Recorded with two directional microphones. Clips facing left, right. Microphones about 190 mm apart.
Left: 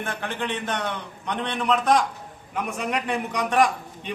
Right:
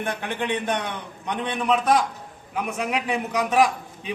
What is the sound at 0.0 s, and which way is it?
A man's voice, 15° right (ahead or behind).